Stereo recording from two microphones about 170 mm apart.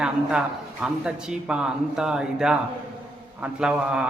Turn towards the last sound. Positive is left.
turn(degrees=-5)  # may be behind; listen again after turning